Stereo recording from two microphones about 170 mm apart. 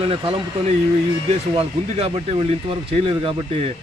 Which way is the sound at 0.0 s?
35° right (ahead or behind).